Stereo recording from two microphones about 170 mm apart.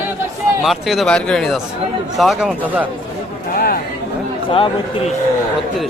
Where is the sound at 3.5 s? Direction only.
60° left (ahead or behind).